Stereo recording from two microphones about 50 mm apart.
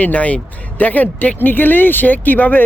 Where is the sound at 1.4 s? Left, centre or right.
Left.